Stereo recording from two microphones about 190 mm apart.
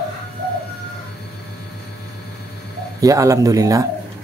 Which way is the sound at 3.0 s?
15° right (ahead or behind).